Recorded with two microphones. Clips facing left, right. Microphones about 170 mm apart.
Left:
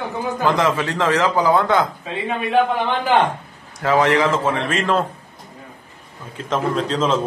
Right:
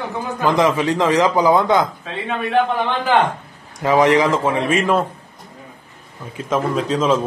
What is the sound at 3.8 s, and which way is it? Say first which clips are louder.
A man's voice: right 2 dB; 15° right (ahead or behind).